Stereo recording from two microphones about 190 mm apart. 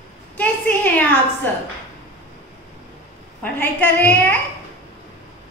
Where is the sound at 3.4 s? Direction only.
10° left (ahead or behind).